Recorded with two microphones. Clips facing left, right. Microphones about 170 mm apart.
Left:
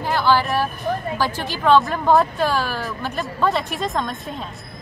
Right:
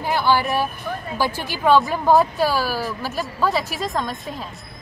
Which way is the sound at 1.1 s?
10° right (ahead or behind).